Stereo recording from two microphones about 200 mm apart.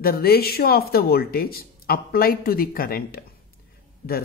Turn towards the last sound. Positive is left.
turn(degrees=45)  # may be behind; listen again after turning